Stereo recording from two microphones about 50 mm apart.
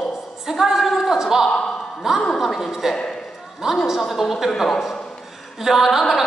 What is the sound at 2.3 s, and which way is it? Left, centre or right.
Speech, centre.